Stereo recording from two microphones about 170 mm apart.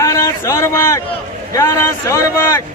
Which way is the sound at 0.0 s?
20° left (ahead or behind).